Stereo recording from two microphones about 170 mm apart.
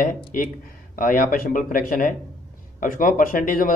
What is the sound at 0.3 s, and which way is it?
A man's voice, 55° left (ahead or behind).